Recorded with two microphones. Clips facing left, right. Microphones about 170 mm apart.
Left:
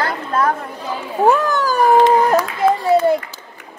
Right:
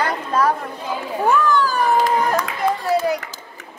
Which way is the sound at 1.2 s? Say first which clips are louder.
Left 2 dB; 45° left (ahead or behind).